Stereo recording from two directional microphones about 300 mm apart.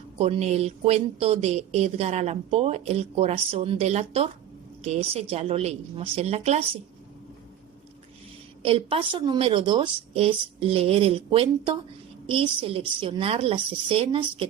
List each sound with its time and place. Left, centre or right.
0.2 s a woman's voice: centre
8.6 s a woman's voice: centre